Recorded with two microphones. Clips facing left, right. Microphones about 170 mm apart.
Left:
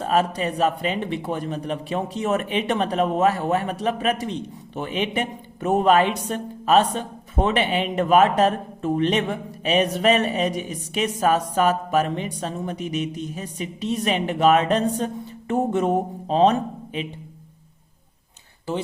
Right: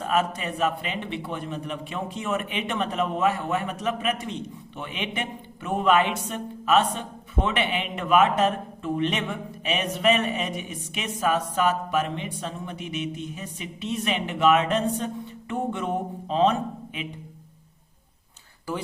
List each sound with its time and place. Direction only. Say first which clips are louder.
0.0 s a man's voice: left 4 dB; 35° left (ahead or behind)